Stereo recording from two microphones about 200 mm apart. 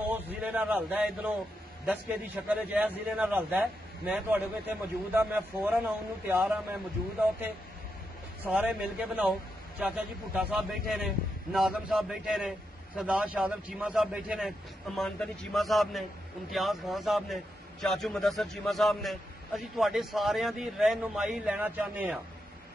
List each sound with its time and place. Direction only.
0.1 s a man's voice: 5° right (ahead or behind)
8.5 s a man's voice: 5° right (ahead or behind)